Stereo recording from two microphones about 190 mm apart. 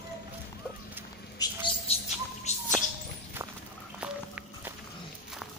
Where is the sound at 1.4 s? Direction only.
25° left (ahead or behind).